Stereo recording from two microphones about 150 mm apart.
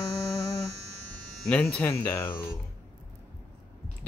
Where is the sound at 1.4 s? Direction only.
5° left (ahead or behind).